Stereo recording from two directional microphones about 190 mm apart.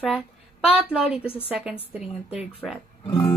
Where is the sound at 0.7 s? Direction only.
5° right (ahead or behind).